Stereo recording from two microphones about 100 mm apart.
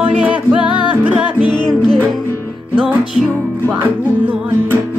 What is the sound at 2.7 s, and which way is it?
Music, 10° right (ahead or behind).